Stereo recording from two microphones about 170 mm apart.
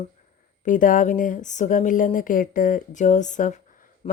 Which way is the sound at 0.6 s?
50° left (ahead or behind).